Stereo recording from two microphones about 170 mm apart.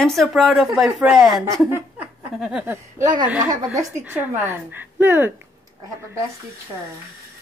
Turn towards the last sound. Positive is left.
turn(degrees=-15)  # may be behind; listen again after turning